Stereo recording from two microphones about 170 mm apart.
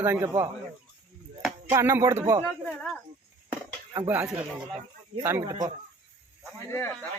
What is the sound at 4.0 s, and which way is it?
Speech, 15° right (ahead or behind).